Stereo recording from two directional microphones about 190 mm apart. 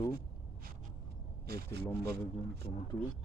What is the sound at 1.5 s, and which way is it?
Speech, 55° right (ahead or behind).